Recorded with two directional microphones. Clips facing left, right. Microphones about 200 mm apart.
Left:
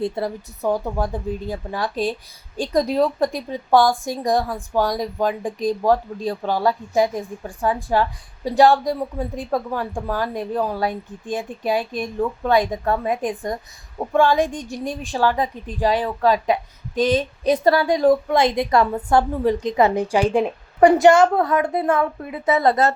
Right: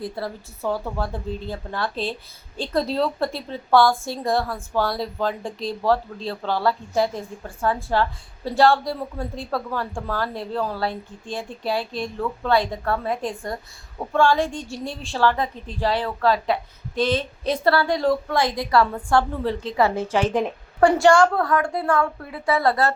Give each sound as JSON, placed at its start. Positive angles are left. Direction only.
{"t": 0.0, "sound": "a woman's voice", "side_deg": 20}